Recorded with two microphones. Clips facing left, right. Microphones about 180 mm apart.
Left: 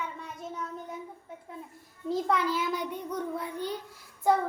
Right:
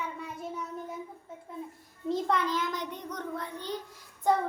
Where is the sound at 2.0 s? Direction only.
Centre (ahead or behind).